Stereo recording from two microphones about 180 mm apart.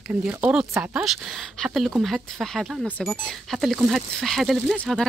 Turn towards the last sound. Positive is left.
turn(degrees=5)  # may be behind; listen again after turning